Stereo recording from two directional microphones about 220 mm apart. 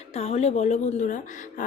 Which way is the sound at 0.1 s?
30° left (ahead or behind).